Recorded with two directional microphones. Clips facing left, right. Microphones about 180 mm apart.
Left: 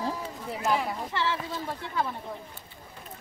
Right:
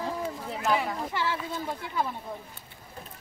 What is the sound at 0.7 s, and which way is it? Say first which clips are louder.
Speech: right 2 dB; 10° right (ahead or behind).